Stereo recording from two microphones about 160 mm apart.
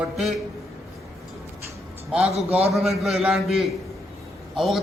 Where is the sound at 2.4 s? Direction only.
40° right (ahead or behind).